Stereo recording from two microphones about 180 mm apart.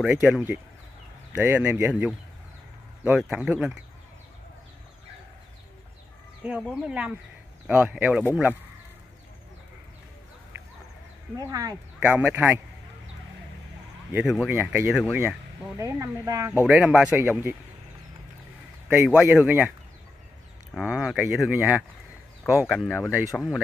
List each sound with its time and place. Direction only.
0.0 s speech: 5° right (ahead or behind)
6.9 s speech: 5° right (ahead or behind)
11.3 s speech: 20° right (ahead or behind)
14.1 s speech: centre (ahead or behind)
14.5 s speech: 10° right (ahead or behind)
16.6 s speech: 5° right (ahead or behind)
18.9 s speech: 5° right (ahead or behind)
20.7 s speech: 5° right (ahead or behind)